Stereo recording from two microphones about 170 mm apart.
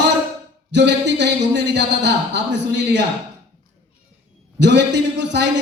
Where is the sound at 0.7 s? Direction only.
90° right.